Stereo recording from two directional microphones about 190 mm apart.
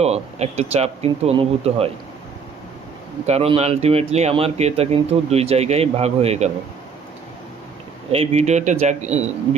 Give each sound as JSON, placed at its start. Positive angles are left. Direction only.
{"t": 0.0, "sound": "speech", "side_deg": -35}
{"t": 3.2, "sound": "speech", "side_deg": -30}
{"t": 8.1, "sound": "speech", "side_deg": -30}